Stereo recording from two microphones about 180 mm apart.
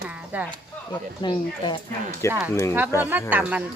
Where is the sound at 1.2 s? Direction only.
25° left (ahead or behind).